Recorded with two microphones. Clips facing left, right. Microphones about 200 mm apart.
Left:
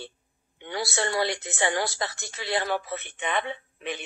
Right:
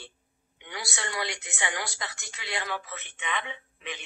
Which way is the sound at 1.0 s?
35° left (ahead or behind).